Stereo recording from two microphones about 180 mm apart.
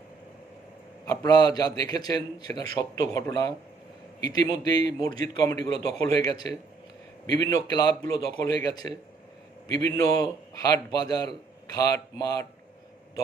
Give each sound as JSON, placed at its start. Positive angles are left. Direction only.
{"t": 1.0, "sound": "a man's voice", "side_deg": 20}